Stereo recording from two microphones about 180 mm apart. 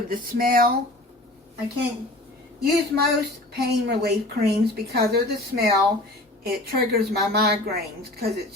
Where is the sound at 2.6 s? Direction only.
60° right (ahead or behind).